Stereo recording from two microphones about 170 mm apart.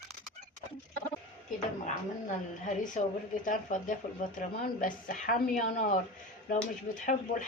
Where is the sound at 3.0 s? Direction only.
50° left (ahead or behind).